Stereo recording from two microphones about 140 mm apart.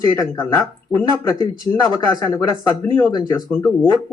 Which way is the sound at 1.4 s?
25° left (ahead or behind).